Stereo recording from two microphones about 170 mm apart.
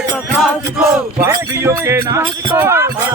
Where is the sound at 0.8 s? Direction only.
15° right (ahead or behind).